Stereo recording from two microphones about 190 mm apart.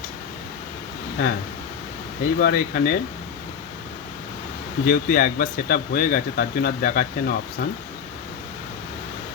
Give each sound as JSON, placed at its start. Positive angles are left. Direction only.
{"t": 1.2, "sound": "speech", "side_deg": 55}
{"t": 2.4, "sound": "speech", "side_deg": 50}
{"t": 4.9, "sound": "speech", "side_deg": 50}